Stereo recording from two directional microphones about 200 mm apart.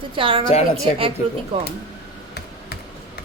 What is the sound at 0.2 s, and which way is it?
Speech, 25° right (ahead or behind).